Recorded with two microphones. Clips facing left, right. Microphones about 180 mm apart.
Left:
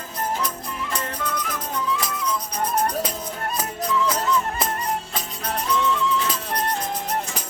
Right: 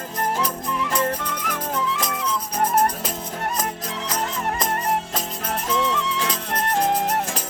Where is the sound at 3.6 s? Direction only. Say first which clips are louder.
Left 6 dB; 80° right.